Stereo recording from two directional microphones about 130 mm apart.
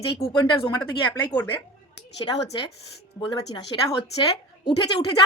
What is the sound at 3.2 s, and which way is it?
Speech, 25° left (ahead or behind).